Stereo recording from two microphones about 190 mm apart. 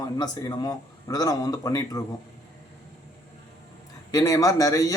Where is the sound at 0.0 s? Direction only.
20° left (ahead or behind).